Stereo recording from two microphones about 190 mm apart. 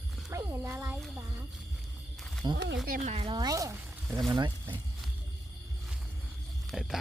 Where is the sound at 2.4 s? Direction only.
20° right (ahead or behind).